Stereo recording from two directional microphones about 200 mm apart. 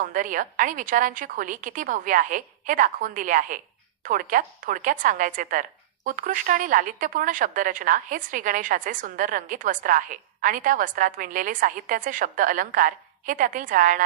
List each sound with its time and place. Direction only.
0.0 s a woman's voice: 40° right (ahead or behind)